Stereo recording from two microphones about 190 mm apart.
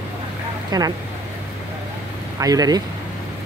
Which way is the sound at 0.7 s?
20° right (ahead or behind).